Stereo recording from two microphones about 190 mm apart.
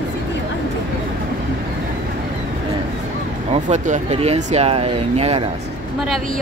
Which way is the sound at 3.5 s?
35° right (ahead or behind).